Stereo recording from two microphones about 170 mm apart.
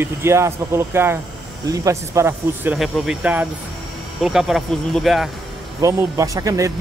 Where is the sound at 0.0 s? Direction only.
15° right (ahead or behind).